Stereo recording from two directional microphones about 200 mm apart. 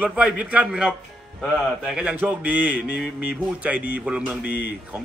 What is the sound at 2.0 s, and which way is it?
A man's voice, 5° right (ahead or behind).